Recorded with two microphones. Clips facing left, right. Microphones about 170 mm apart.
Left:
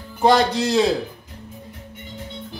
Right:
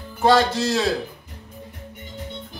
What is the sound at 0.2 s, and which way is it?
Speech, 20° left (ahead or behind).